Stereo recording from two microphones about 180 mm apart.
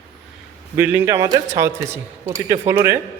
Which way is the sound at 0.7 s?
10° right (ahead or behind).